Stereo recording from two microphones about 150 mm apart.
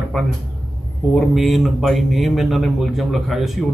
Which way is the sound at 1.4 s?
Centre (ahead or behind).